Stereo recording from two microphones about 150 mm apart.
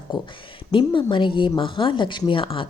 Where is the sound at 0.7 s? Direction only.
30° left (ahead or behind).